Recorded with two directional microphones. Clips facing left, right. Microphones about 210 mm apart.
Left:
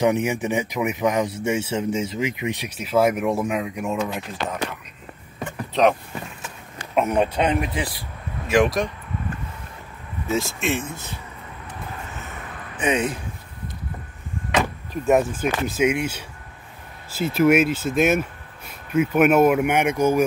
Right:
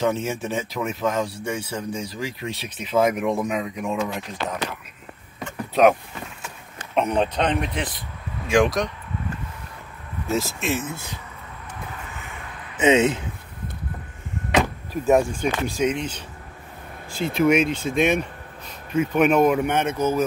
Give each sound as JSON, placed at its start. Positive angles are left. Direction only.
{"t": 0.0, "sound": "speech", "side_deg": 15}
{"t": 7.0, "sound": "speech", "side_deg": 5}
{"t": 10.2, "sound": "speech", "side_deg": 0}
{"t": 12.7, "sound": "speech", "side_deg": -25}
{"t": 14.6, "sound": "speech", "side_deg": 0}